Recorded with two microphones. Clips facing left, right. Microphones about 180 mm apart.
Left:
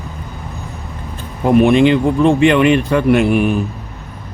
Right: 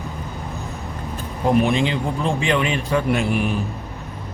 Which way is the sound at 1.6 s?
65° left (ahead or behind).